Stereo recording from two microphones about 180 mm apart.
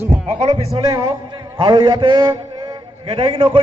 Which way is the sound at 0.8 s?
25° right (ahead or behind).